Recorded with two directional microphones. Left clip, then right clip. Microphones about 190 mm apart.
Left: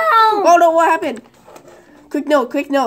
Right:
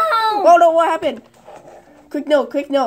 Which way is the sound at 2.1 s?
10° left (ahead or behind).